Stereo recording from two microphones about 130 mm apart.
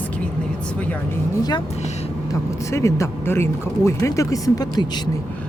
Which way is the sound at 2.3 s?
20° left (ahead or behind).